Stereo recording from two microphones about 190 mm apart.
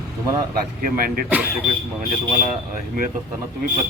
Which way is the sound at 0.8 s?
50° right (ahead or behind).